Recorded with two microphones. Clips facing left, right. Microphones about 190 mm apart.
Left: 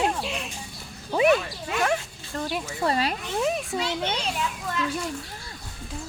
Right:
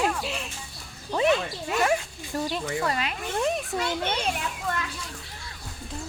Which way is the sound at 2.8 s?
30° left (ahead or behind).